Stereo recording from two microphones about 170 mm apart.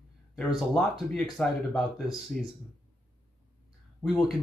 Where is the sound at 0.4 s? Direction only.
Centre (ahead or behind).